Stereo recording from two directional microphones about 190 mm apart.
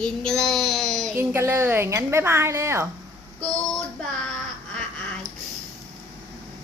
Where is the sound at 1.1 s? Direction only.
10° right (ahead or behind).